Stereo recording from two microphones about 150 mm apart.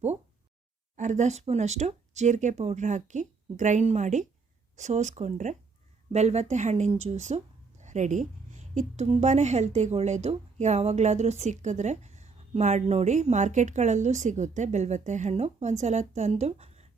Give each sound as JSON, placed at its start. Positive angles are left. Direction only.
{"t": 0.9, "sound": "a woman's voice", "side_deg": -55}